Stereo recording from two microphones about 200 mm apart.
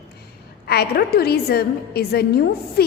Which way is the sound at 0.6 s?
50° left (ahead or behind).